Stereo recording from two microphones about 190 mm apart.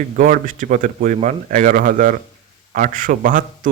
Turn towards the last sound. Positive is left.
turn(degrees=-45)  # may be behind; listen again after turning